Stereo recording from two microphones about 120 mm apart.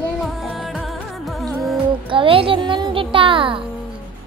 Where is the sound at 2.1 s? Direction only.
50° right (ahead or behind).